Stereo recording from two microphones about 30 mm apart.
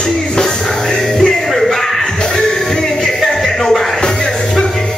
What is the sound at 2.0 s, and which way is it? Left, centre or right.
Music, left.